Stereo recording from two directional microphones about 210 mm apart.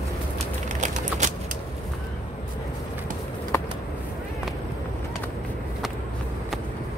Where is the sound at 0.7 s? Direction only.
35° right (ahead or behind).